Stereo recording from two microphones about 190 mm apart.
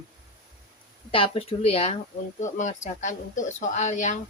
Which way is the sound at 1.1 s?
30° left (ahead or behind).